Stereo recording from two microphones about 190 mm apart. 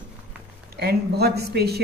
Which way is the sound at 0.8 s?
55° right (ahead or behind).